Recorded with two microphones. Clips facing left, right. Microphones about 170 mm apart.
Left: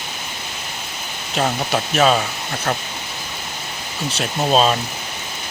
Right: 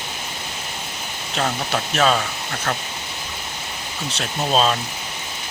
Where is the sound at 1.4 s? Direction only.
10° left (ahead or behind).